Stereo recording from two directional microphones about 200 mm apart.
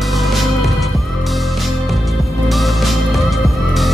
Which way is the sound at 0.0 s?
Centre (ahead or behind).